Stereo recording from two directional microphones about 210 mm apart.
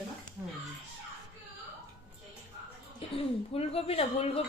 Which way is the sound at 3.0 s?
25° left (ahead or behind).